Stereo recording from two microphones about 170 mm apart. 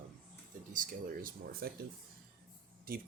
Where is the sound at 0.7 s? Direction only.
55° right (ahead or behind).